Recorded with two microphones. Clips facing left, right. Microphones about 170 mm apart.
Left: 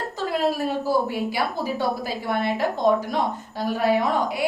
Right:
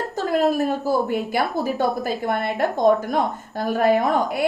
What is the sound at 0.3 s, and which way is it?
A woman's voice, 50° right (ahead or behind).